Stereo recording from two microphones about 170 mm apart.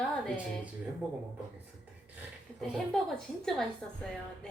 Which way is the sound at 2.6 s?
5° left (ahead or behind).